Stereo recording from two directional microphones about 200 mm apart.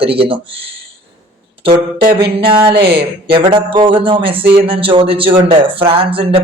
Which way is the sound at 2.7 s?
55° right (ahead or behind).